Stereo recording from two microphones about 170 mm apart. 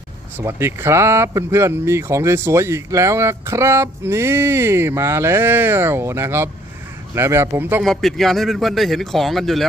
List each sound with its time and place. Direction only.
0.3 s speech: 15° right (ahead or behind)
7.9 s a man's voice: centre (ahead or behind)